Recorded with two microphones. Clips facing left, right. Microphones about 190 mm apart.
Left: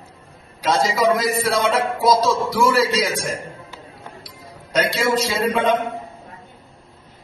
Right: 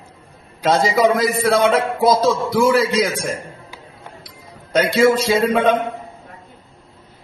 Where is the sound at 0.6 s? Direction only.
55° right (ahead or behind).